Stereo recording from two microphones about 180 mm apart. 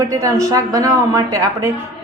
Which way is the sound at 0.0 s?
20° right (ahead or behind).